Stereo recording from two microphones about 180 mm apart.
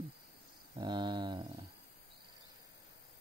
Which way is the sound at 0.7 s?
25° right (ahead or behind).